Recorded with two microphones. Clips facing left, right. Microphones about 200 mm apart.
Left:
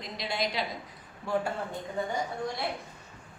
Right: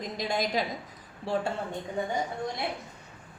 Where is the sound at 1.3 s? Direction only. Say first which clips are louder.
Even; 30° right (ahead or behind).